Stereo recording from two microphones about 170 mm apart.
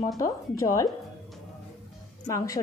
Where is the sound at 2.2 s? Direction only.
20° left (ahead or behind).